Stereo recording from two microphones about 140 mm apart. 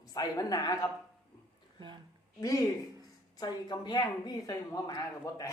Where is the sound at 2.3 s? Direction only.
20° left (ahead or behind).